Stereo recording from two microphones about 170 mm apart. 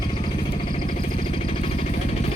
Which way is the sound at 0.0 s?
30° left (ahead or behind).